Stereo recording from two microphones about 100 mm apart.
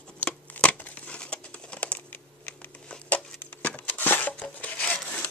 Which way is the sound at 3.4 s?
15° left (ahead or behind).